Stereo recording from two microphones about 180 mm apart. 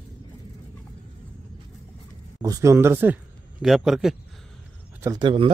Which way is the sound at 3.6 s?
Centre (ahead or behind).